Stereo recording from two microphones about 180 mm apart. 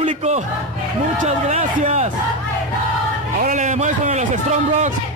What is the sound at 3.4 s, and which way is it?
A man's voice, 45° right (ahead or behind).